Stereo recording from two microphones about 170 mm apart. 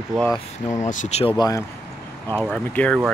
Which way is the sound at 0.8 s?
45° left (ahead or behind).